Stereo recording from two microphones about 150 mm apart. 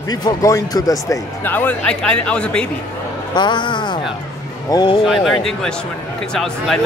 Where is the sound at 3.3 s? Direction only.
30° left (ahead or behind).